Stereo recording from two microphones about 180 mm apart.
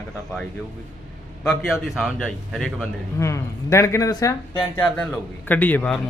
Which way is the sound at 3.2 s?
15° left (ahead or behind).